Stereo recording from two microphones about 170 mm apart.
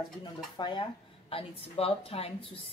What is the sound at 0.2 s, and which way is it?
A woman's voice, 25° left (ahead or behind).